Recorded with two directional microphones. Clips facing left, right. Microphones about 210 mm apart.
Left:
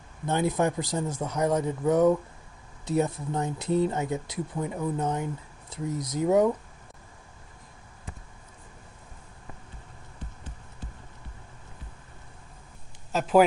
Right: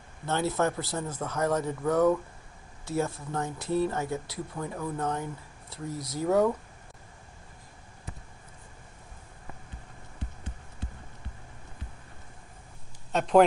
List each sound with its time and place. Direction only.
0.2 s speech: 15° left (ahead or behind)
13.1 s speech: centre (ahead or behind)